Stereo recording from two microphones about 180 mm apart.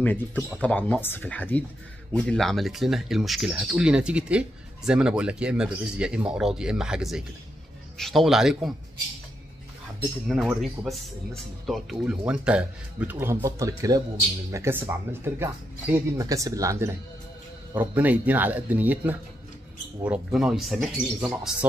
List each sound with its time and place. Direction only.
0.0 s speech: 10° left (ahead or behind)
10.2 s speech: centre (ahead or behind)
20.3 s speech: centre (ahead or behind)